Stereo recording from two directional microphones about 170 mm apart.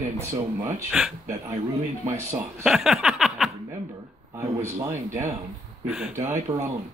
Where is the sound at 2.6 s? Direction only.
5° right (ahead or behind).